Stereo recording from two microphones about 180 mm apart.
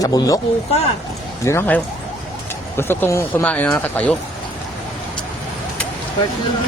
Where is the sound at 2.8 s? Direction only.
15° left (ahead or behind).